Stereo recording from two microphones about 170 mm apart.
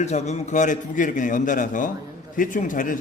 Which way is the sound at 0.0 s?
40° left (ahead or behind).